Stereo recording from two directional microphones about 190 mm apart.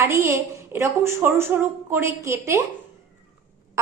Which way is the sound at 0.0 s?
15° right (ahead or behind).